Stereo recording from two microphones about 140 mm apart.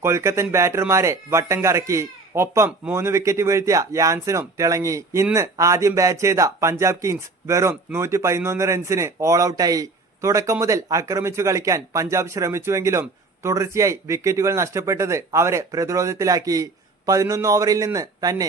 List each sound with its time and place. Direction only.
0.0 s a man's voice: 20° right (ahead or behind)